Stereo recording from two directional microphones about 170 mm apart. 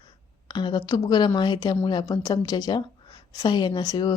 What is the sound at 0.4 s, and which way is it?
A woman's voice, 25° left (ahead or behind).